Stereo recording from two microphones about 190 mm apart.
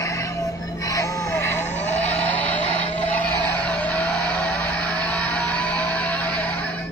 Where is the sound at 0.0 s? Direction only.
15° left (ahead or behind).